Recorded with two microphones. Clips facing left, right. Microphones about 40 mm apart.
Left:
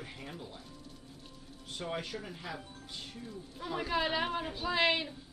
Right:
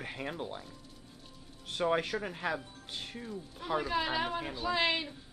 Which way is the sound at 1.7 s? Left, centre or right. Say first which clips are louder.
Right 8 dB; right.